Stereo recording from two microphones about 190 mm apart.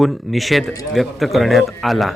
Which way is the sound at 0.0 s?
Centre (ahead or behind).